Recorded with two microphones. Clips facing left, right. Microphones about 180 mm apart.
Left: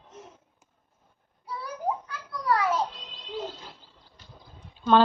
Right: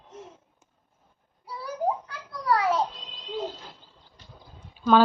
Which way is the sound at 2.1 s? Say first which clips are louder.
Right 1 dB; 25° right (ahead or behind).